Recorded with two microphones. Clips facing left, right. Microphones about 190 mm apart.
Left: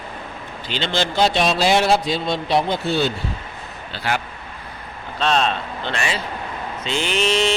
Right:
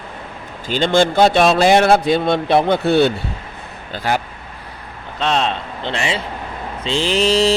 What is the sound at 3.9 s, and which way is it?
Speech, 45° right (ahead or behind).